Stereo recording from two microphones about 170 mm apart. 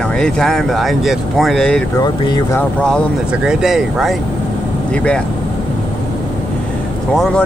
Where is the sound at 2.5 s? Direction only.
10° left (ahead or behind).